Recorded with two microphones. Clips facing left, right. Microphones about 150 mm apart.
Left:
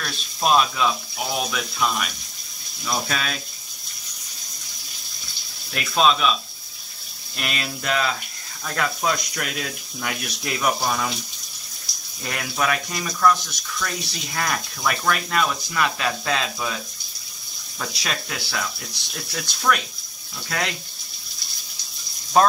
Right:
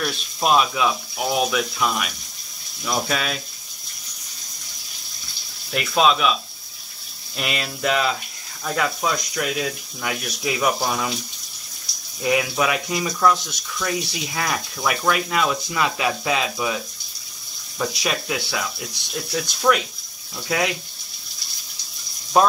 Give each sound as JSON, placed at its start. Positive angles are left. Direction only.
{"t": 0.0, "sound": "speech", "side_deg": -10}
{"t": 5.7, "sound": "speech", "side_deg": -5}
{"t": 7.3, "sound": "speech", "side_deg": -5}
{"t": 12.2, "sound": "speech", "side_deg": -10}
{"t": 17.7, "sound": "speech", "side_deg": -10}
{"t": 22.3, "sound": "speech", "side_deg": -5}